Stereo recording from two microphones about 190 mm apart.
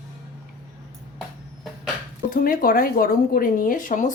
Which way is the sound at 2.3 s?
45° left (ahead or behind).